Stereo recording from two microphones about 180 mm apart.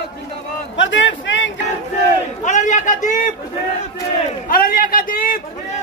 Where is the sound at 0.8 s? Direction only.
90° left.